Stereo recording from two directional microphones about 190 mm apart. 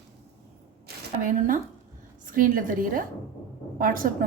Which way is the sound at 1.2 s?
45° right (ahead or behind).